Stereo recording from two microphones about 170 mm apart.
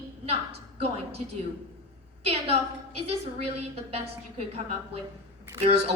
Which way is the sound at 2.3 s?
35° right (ahead or behind).